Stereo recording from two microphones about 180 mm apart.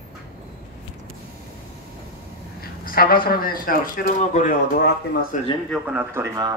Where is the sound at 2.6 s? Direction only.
55° left (ahead or behind).